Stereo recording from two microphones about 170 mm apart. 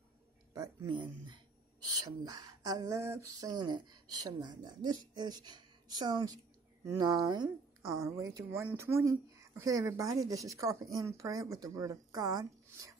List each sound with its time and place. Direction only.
0.5 s a woman's voice: 25° right (ahead or behind)